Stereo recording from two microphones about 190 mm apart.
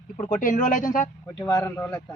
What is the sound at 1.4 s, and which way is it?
Speech, 20° left (ahead or behind).